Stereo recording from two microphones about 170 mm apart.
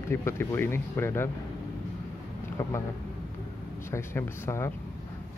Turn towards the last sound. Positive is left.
turn(degrees=15)  # may be behind; listen again after turning